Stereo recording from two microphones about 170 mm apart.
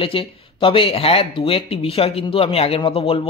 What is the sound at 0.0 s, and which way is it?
Speech, 30° left (ahead or behind).